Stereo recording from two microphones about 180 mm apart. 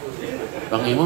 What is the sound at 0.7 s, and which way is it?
Speech, 30° left (ahead or behind).